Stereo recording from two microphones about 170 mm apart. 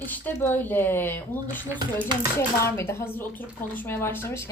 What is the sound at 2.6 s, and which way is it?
Speech, 15° left (ahead or behind).